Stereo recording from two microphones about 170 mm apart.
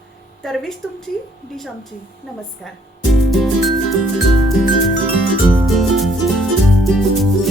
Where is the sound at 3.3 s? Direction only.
Centre (ahead or behind).